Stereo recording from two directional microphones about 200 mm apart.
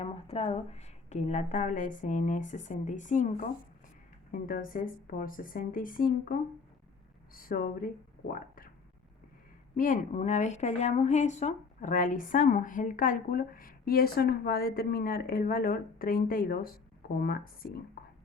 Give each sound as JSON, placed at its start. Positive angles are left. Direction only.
{"t": 0.0, "sound": "a woman's voice", "side_deg": 30}
{"t": 9.7, "sound": "a woman's voice", "side_deg": 40}
{"t": 18.0, "sound": "whispering", "side_deg": 50}